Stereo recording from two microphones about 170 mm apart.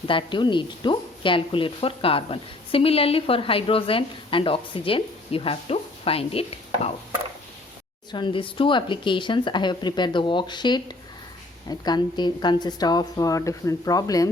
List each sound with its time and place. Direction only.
0.1 s a woman's voice: 30° left (ahead or behind)
8.1 s speech: 30° left (ahead or behind)